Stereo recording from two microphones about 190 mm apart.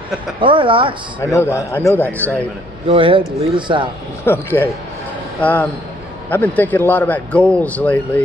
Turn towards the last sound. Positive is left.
turn(degrees=5)  # may be behind; listen again after turning